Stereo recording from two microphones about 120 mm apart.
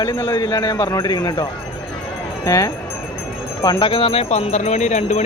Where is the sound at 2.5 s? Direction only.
25° left (ahead or behind); by 5.2 s 70° left (ahead or behind).